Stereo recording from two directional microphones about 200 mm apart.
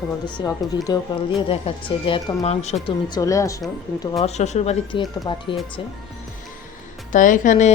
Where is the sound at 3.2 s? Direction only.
15° left (ahead or behind).